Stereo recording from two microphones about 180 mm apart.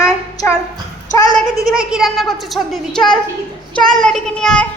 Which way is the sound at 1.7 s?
5° right (ahead or behind).